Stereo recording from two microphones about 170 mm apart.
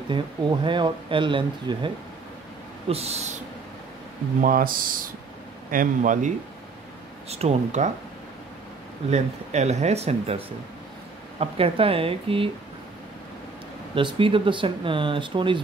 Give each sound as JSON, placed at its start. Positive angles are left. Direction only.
{"t": 0.1, "sound": "speech", "side_deg": -30}
{"t": 2.9, "sound": "speech", "side_deg": -40}
{"t": 4.4, "sound": "speech", "side_deg": -55}
{"t": 7.2, "sound": "speech", "side_deg": -40}
{"t": 9.1, "sound": "speech", "side_deg": -40}
{"t": 13.9, "sound": "speech", "side_deg": -30}